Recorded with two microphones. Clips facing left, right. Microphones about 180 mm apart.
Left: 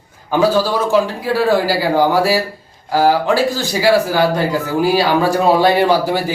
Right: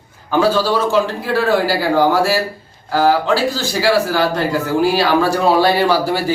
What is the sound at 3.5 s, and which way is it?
Speech, 15° left (ahead or behind).